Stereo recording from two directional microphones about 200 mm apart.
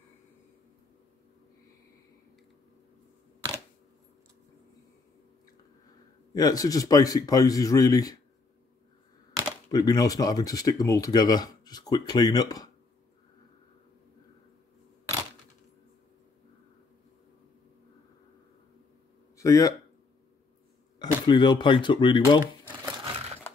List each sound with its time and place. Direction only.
6.3 s speech: 20° left (ahead or behind)
9.7 s speech: 20° left (ahead or behind)
19.3 s speech: 15° left (ahead or behind)
21.3 s speech: 25° left (ahead or behind)
22.4 s a sound: 15° right (ahead or behind)